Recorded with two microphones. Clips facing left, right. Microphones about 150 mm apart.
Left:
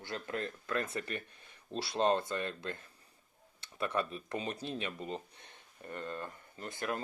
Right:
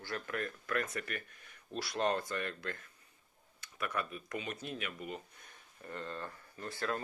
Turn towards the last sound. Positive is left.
turn(degrees=20)  # may be behind; listen again after turning